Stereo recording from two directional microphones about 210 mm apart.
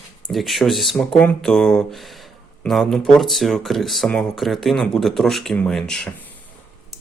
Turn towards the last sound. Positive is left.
turn(degrees=5)  # may be behind; listen again after turning